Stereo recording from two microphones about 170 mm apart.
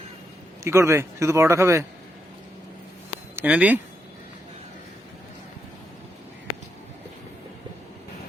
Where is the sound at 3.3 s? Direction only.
10° right (ahead or behind).